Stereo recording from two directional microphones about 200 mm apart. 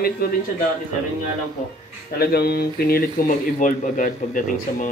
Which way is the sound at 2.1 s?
55° left (ahead or behind).